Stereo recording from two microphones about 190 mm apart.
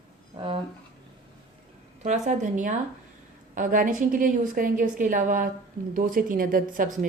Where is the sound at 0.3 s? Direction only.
25° right (ahead or behind).